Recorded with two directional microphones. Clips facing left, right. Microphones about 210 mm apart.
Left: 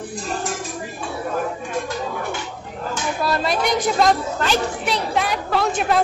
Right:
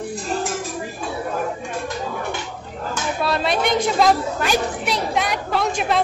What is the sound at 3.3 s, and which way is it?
A woman's voice, centre (ahead or behind).